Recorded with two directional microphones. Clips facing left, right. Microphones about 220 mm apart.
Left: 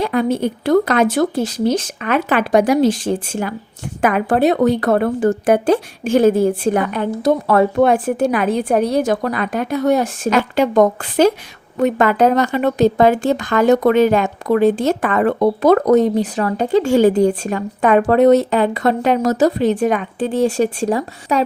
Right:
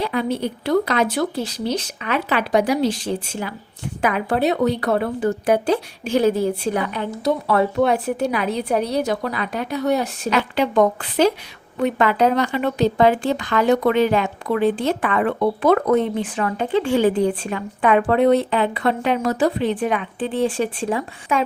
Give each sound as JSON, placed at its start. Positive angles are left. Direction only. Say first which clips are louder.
{"t": 0.0, "sound": "speech", "louder": "left 5 dB", "side_deg": 50}